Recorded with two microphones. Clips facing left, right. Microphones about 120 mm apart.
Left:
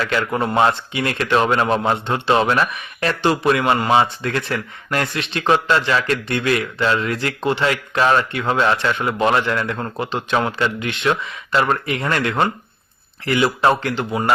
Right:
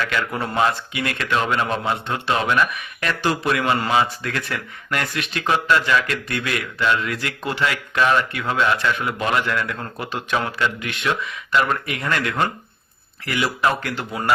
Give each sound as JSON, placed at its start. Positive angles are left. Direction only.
{"t": 0.0, "sound": "speech", "side_deg": 30}